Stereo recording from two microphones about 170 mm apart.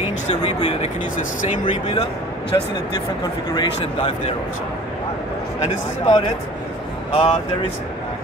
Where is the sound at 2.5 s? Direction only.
25° left (ahead or behind).